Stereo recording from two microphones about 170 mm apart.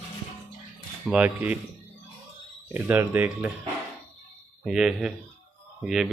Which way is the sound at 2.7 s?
10° right (ahead or behind).